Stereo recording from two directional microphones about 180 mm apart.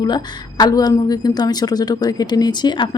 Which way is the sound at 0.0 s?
25° left (ahead or behind).